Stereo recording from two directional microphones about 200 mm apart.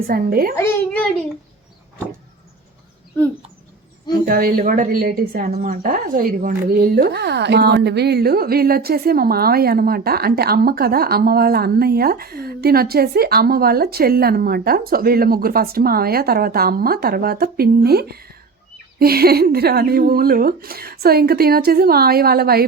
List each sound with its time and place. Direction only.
0.1 s a woman's voice: 45° right (ahead or behind)
0.5 s a child's voice: 10° left (ahead or behind)
4.1 s a woman's voice: 45° right (ahead or behind)